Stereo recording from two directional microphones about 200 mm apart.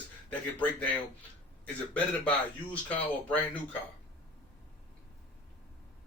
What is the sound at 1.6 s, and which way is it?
A man's voice, 5° left (ahead or behind).